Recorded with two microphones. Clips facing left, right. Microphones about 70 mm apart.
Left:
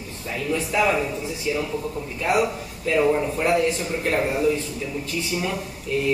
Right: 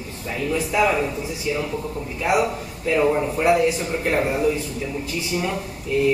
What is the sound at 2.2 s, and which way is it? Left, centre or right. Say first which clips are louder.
A man's voice: right 1 dB; centre.